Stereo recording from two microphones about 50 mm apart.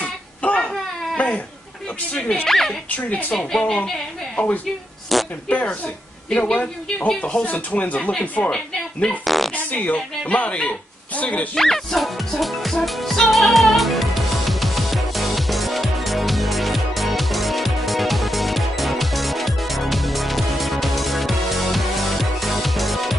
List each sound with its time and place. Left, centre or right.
0.0 s a sound: left
2.4 s speech: centre
3.1 s speech: left
3.3 s speech: centre
4.4 s speech: left
5.1 s zipper: centre
6.4 s speech: left
8.5 s speech: centre
9.2 s speech: centre
9.5 s speech: left
11.5 s music: centre